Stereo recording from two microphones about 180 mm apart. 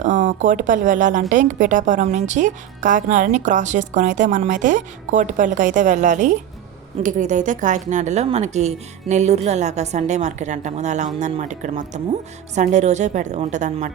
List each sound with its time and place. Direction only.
0.0 s speech: 45° right (ahead or behind)